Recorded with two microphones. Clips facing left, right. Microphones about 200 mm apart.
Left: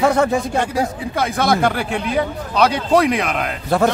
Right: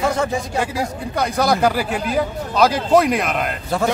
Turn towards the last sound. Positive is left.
turn(degrees=60)  # may be behind; listen again after turning